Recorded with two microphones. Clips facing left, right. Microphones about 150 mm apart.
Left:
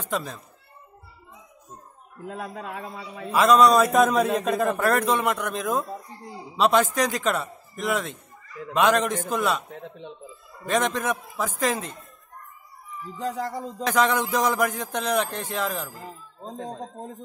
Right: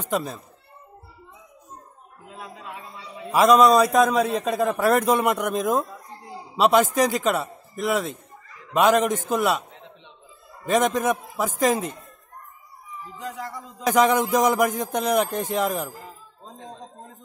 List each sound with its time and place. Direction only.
0.0 s speech: 10° right (ahead or behind)
2.2 s a man's voice: 50° left (ahead or behind)
3.3 s speech: 10° right (ahead or behind)
3.7 s a man's voice: centre (ahead or behind)
4.9 s a man's voice: 10° right (ahead or behind)
9.7 s a sound: 55° left (ahead or behind)
10.7 s speech: 10° right (ahead or behind)
13.2 s a sound: 35° left (ahead or behind)
13.8 s speech: 15° right (ahead or behind)
16.6 s speech: 45° left (ahead or behind)